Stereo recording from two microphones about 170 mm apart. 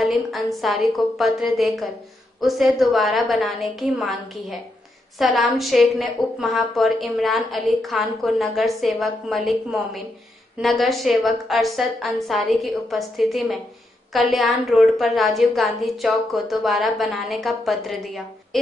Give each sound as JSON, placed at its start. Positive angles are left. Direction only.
{"t": 0.0, "sound": "a woman's voice", "side_deg": 0}